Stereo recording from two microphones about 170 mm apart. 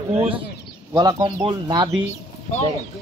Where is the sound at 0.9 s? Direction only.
25° right (ahead or behind).